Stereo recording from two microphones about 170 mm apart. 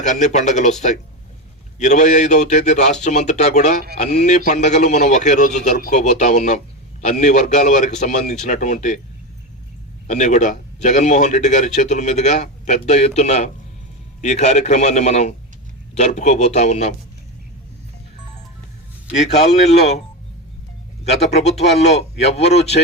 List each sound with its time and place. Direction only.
0.0 s a man's voice: 45° left (ahead or behind)
10.1 s a man's voice: 45° left (ahead or behind)
19.4 s speech: 40° left (ahead or behind)
21.3 s speech: 40° left (ahead or behind)